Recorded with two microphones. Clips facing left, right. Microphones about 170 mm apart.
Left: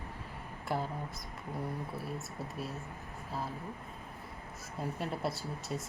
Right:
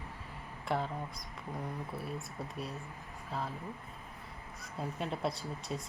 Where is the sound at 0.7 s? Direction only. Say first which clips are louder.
Right 1 dB; centre (ahead or behind).